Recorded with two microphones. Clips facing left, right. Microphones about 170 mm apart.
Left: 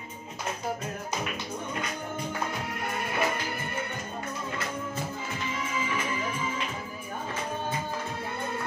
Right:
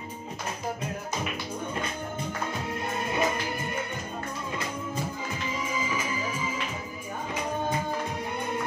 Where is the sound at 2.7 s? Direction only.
25° right (ahead or behind).